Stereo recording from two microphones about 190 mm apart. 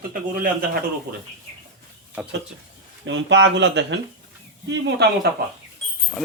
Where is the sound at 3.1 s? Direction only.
75° right (ahead or behind).